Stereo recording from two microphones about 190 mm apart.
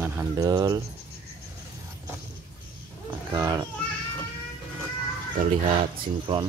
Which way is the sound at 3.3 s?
20° right (ahead or behind).